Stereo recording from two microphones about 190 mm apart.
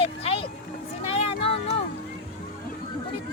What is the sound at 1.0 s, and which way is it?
Vehicle, 30° left (ahead or behind).